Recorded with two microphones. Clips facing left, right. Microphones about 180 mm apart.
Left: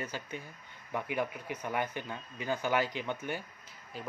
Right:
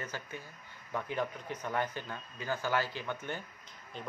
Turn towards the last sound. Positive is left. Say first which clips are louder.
# left 1 dB
turn(degrees=5)  # may be behind; listen again after turning